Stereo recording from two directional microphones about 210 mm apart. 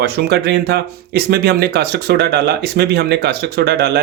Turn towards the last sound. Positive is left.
turn(degrees=-50)  # may be behind; listen again after turning